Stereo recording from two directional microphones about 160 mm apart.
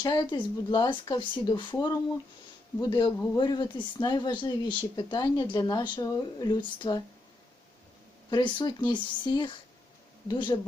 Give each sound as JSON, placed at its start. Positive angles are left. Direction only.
{"t": 0.0, "sound": "speech", "side_deg": 30}
{"t": 8.3, "sound": "speech", "side_deg": 25}